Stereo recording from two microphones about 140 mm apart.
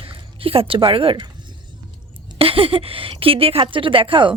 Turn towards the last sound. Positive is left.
turn(degrees=-35)  # may be behind; listen again after turning